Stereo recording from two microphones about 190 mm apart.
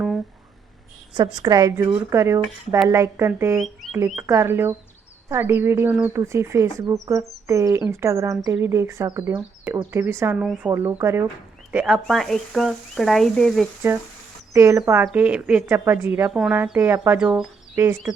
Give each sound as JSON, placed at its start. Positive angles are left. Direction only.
{"t": 1.1, "sound": "speech", "side_deg": -20}
{"t": 3.6, "sound": "sizzle", "side_deg": 0}
{"t": 4.1, "sound": "speech", "side_deg": -15}
{"t": 12.0, "sound": "sizzle", "side_deg": 0}
{"t": 14.5, "sound": "speech", "side_deg": -15}